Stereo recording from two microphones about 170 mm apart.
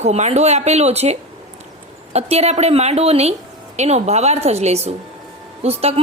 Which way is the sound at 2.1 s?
40° right (ahead or behind).